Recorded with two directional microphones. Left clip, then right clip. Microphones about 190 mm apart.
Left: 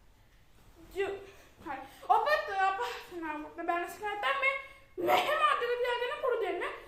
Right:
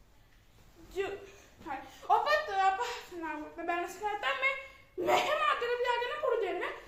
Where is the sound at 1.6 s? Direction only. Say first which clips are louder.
Left 1 dB; 10° left (ahead or behind).